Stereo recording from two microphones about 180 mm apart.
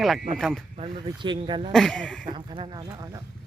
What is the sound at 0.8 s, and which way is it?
Speech, 25° right (ahead or behind).